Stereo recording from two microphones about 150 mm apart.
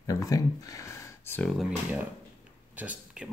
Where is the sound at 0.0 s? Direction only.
25° left (ahead or behind).